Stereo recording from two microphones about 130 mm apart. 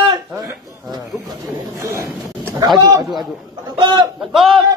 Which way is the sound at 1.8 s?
20° right (ahead or behind).